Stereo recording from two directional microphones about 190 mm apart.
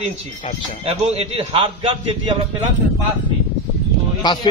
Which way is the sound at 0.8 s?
35° right (ahead or behind).